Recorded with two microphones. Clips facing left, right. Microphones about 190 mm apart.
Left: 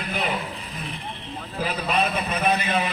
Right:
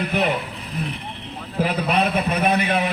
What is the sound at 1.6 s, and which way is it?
A man's voice, 60° right (ahead or behind).